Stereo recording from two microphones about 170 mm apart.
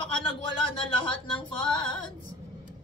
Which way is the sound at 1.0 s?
30° left (ahead or behind).